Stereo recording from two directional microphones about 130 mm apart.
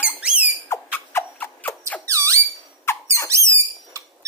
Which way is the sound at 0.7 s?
15° left (ahead or behind).